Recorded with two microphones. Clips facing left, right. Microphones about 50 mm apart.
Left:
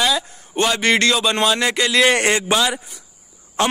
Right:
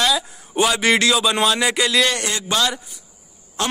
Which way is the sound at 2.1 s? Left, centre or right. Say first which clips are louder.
Left 7 dB; left.